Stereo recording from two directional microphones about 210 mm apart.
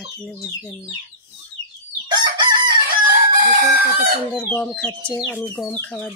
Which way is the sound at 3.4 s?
40° right (ahead or behind).